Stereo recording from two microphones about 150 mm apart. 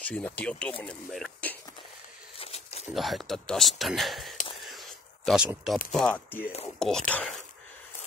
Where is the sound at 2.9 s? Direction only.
Centre (ahead or behind).